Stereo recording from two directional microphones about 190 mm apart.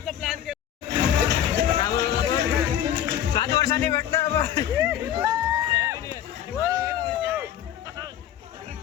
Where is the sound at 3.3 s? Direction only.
20° left (ahead or behind).